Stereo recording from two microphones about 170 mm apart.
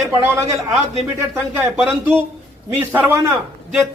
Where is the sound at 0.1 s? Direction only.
15° right (ahead or behind).